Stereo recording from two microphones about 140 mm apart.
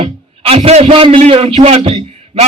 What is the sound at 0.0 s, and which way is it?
A man's voice, 45° right (ahead or behind).